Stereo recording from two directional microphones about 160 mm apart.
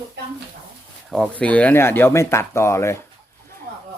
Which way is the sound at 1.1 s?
5° left (ahead or behind).